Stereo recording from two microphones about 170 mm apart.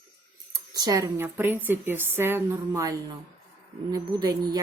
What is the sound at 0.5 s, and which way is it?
Speech, 20° right (ahead or behind).